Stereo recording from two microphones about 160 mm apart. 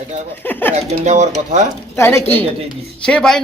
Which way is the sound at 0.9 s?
45° right (ahead or behind).